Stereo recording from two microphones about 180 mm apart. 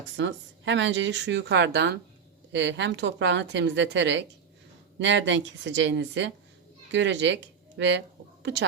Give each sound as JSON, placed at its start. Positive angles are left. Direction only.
{"t": 0.2, "sound": "speech", "side_deg": -90}
{"t": 4.9, "sound": "speech", "side_deg": -90}